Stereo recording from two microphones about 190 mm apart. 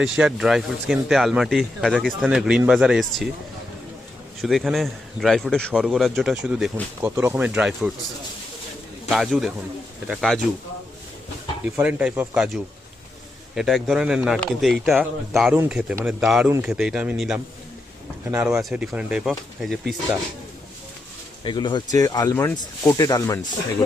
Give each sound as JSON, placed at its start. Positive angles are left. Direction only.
{"t": 0.2, "sound": "speech", "side_deg": -5}
{"t": 4.4, "sound": "speech", "side_deg": 0}
{"t": 9.0, "sound": "speech", "side_deg": 0}
{"t": 11.8, "sound": "speech", "side_deg": -5}
{"t": 13.6, "sound": "speech", "side_deg": 0}
{"t": 21.4, "sound": "speech", "side_deg": 25}